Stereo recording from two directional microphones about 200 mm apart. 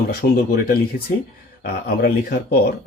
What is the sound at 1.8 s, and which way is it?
Speech, 50° left (ahead or behind).